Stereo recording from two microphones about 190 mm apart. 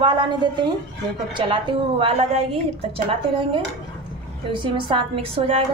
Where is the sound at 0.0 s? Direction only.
25° right (ahead or behind).